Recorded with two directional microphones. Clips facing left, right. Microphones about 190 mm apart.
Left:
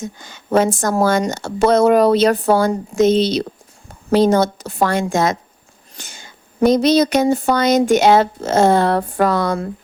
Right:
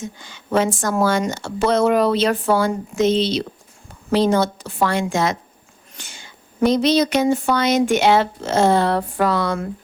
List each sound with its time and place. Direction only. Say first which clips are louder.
0.0 s speech: left 3 dB; 45° left (ahead or behind)